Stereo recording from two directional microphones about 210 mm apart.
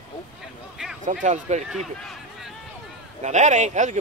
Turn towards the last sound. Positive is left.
turn(degrees=-35)  # may be behind; listen again after turning